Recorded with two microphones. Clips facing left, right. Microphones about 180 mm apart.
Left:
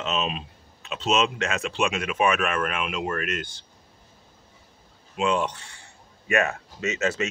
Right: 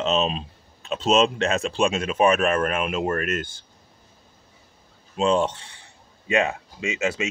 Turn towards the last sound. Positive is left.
turn(degrees=-15)  # may be behind; listen again after turning